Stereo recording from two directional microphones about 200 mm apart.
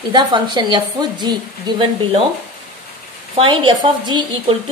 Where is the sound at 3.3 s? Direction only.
25° right (ahead or behind).